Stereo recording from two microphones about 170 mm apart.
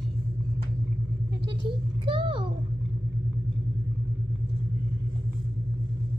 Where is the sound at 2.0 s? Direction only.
30° right (ahead or behind).